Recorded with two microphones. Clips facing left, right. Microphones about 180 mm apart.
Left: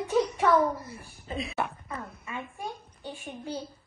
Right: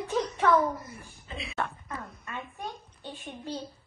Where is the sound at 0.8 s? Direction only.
35° left (ahead or behind).